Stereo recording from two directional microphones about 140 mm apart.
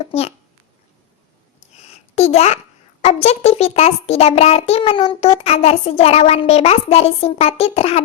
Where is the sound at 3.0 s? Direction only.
50° left (ahead or behind).